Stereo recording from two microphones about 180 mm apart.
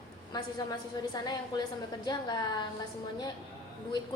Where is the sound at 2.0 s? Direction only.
20° left (ahead or behind).